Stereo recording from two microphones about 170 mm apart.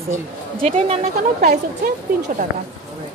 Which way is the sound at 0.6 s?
35° right (ahead or behind).